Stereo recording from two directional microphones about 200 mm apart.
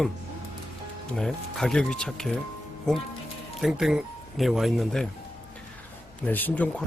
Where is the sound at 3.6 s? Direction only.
Centre (ahead or behind).